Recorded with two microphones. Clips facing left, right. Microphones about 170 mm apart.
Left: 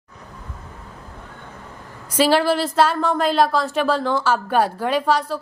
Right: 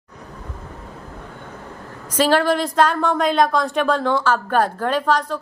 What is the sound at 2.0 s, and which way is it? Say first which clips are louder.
A woman's voice: even; 10° left (ahead or behind).